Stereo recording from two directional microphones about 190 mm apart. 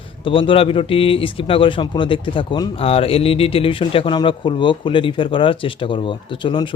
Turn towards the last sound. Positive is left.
turn(degrees=25)  # may be behind; listen again after turning